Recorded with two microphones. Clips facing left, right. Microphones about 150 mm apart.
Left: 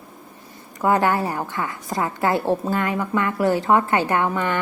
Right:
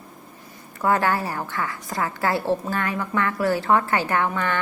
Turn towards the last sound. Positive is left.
turn(degrees=15)  # may be behind; listen again after turning